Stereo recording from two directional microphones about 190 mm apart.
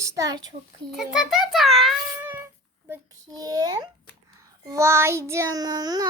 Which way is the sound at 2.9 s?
20° right (ahead or behind).